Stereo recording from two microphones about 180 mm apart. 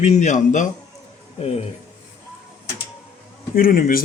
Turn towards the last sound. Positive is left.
turn(degrees=50)  # may be behind; listen again after turning